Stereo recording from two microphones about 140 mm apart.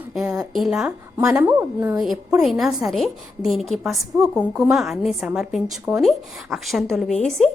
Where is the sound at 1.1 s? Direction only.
20° right (ahead or behind).